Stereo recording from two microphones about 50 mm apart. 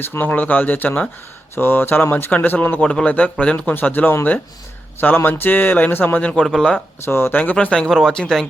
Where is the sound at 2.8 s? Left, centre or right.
Left.